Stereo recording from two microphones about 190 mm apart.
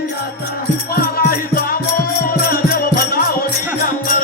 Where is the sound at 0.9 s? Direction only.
55° left (ahead or behind).